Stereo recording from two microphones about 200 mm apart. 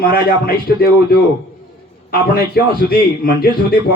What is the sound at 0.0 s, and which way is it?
A man's voice, 50° left (ahead or behind).